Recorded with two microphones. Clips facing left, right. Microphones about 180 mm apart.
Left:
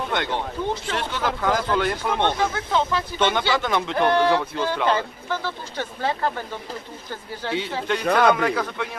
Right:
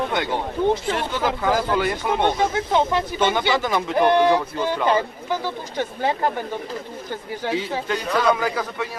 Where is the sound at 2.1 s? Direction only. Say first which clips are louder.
Right 4 dB; 15° right (ahead or behind).